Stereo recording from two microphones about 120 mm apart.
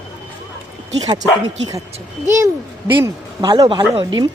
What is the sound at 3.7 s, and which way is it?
Speech, 40° right (ahead or behind).